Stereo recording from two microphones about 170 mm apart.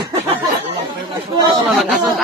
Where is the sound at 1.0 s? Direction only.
25° right (ahead or behind).